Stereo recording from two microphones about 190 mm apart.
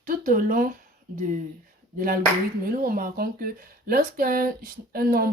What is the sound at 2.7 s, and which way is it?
Speech, 50° right (ahead or behind).